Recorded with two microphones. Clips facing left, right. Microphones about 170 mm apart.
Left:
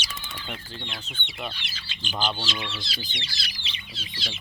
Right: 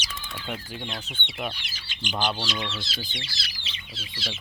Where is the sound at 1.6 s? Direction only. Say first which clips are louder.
Right 2 dB; 15° right (ahead or behind).